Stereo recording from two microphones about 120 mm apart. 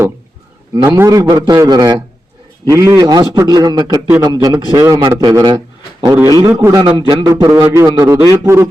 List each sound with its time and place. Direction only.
0.9 s a man's voice: 20° right (ahead or behind)
6.7 s a man's voice: 35° right (ahead or behind)